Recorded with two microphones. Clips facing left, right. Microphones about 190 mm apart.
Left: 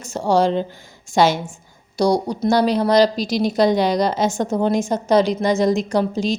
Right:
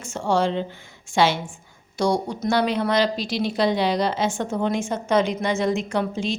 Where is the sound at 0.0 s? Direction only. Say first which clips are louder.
Left 4 dB; 40° left (ahead or behind).